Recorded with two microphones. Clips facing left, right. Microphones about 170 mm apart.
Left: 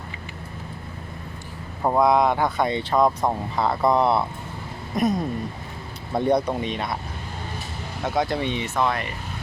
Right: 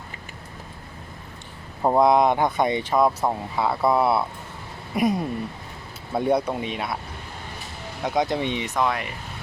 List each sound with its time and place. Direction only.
1.8 s speech: 20° right (ahead or behind)
8.0 s speech: 20° right (ahead or behind)